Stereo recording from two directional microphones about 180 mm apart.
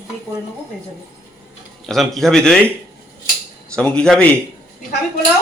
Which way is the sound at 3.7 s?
5° left (ahead or behind).